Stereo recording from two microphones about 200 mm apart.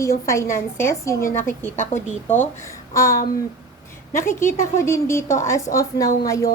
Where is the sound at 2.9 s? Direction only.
15° left (ahead or behind).